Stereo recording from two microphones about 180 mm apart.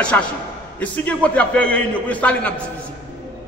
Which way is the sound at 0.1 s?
10° left (ahead or behind).